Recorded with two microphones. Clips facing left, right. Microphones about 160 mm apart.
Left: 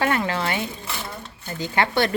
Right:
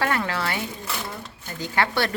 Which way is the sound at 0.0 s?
20° left (ahead or behind).